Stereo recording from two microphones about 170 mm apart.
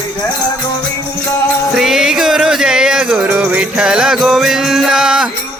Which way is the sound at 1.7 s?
Centre (ahead or behind).